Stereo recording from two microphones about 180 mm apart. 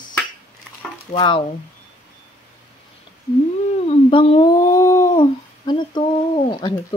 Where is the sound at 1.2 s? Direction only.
30° left (ahead or behind).